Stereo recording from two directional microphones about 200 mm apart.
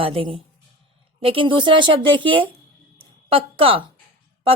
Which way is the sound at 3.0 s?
25° right (ahead or behind).